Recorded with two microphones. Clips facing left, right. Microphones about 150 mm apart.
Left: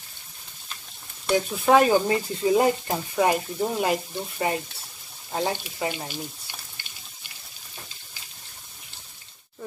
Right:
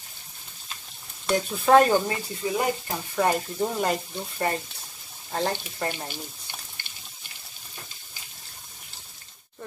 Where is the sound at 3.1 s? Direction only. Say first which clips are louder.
Left 1 dB; 10° left (ahead or behind).